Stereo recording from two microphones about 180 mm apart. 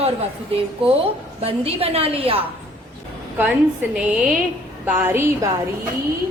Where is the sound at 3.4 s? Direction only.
5° right (ahead or behind).